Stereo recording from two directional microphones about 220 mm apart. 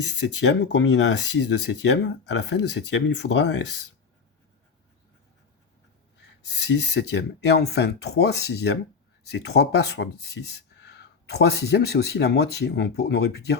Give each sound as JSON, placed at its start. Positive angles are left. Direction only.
{"t": 0.0, "sound": "speech", "side_deg": 50}
{"t": 6.4, "sound": "speech", "side_deg": 50}